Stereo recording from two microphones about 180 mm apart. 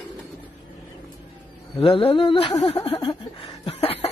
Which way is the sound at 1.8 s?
30° left (ahead or behind).